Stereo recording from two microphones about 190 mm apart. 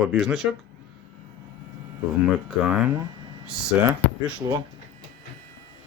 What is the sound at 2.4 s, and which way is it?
Speech, 5° right (ahead or behind).